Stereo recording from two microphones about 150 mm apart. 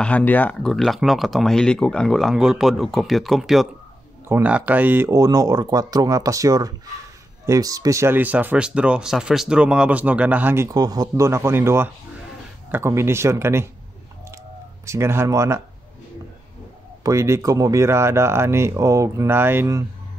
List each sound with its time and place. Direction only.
0.0 s speech: 10° left (ahead or behind); by 13.7 s 15° right (ahead or behind)
14.9 s speech: 15° right (ahead or behind)
17.0 s speech: 20° right (ahead or behind)